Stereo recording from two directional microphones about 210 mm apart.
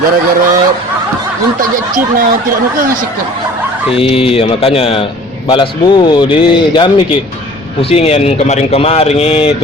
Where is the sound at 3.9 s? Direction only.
25° left (ahead or behind).